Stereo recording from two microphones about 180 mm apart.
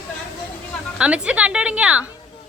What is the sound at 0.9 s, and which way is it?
A woman's voice, 5° right (ahead or behind).